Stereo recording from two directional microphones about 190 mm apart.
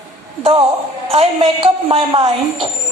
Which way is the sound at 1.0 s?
30° right (ahead or behind).